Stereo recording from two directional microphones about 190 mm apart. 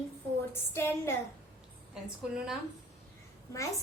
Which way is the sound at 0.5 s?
10° left (ahead or behind).